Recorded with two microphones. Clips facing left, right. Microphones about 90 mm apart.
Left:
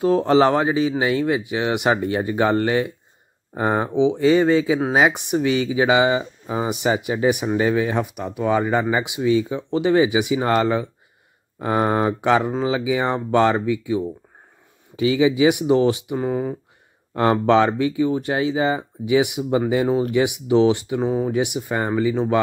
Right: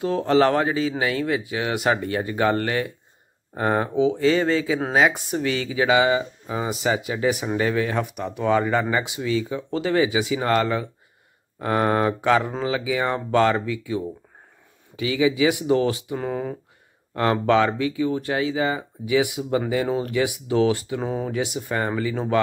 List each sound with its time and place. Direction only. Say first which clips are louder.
0.0 s speech: left 4 dB; 30° left (ahead or behind)
0.4 s speech: left 2 dB; 20° left (ahead or behind)
17.1 s speech: left 3 dB; 25° left (ahead or behind)
21.0 s speech: left 5 dB; 5° left (ahead or behind)
21.3 s speech: left 4 dB; 15° left (ahead or behind)